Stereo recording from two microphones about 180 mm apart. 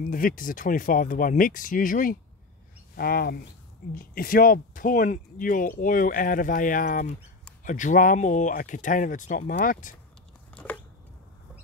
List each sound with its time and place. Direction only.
0.0 s speech: 50° left (ahead or behind)
10.5 s chewing: 5° left (ahead or behind)